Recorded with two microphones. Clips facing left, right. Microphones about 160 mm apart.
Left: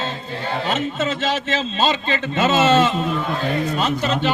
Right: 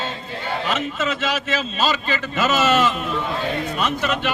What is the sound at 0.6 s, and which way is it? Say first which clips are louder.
A man's voice: left 2 dB; 25° left (ahead or behind).